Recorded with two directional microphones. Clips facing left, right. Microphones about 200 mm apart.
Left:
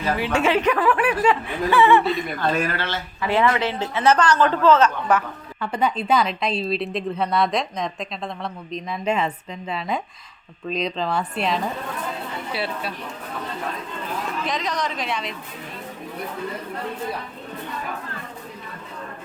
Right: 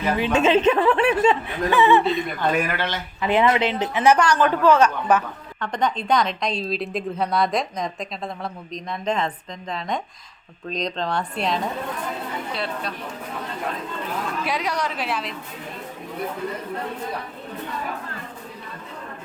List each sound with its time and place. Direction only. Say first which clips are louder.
0.0 s speech: right 2 dB; 20° right (ahead or behind)
5.5 s a woman's voice: left 1 dB; 10° left (ahead or behind)
14.4 s speech: right 1 dB; 10° right (ahead or behind)